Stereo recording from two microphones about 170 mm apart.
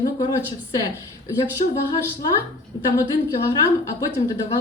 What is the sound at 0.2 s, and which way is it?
Speech, 20° left (ahead or behind).